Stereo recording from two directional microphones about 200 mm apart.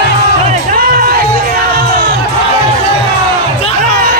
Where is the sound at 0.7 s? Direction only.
45° right (ahead or behind).